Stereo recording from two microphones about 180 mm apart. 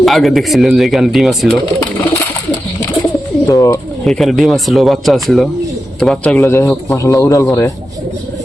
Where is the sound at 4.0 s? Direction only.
Centre (ahead or behind).